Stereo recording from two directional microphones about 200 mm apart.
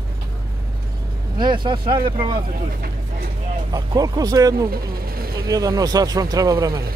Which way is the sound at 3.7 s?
20° right (ahead or behind).